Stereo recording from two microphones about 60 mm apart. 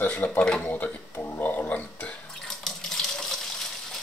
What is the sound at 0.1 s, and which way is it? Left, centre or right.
Speech, left.